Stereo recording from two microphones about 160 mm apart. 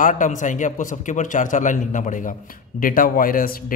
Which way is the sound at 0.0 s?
50° left (ahead or behind).